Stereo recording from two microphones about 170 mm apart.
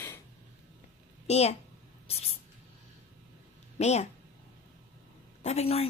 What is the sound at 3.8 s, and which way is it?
Speech, 40° left (ahead or behind).